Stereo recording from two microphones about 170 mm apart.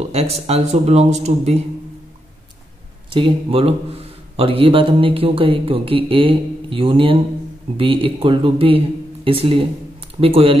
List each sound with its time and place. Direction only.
0.0 s speech: 40° right (ahead or behind)
3.1 s speech: 30° right (ahead or behind)